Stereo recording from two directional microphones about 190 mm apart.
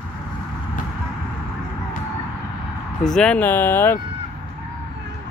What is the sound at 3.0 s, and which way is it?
Speech, 5° left (ahead or behind).